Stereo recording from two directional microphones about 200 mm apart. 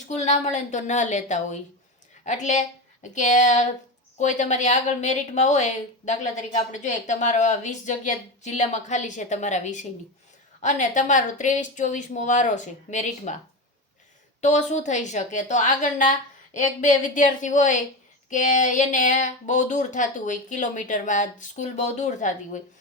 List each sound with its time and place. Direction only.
0.1 s a woman's voice: 35° left (ahead or behind)
14.4 s a woman's voice: 35° left (ahead or behind)